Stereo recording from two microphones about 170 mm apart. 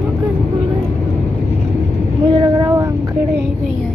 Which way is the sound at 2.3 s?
20° right (ahead or behind).